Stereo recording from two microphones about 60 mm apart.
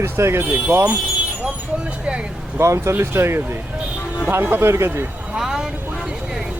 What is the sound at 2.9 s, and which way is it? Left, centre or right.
Speech, right.